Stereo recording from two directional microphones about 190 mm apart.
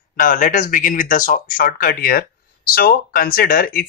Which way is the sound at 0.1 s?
45° left (ahead or behind).